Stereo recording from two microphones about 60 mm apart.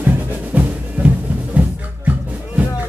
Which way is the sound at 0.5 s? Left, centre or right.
Right.